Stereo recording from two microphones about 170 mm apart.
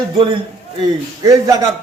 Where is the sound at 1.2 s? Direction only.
20° right (ahead or behind).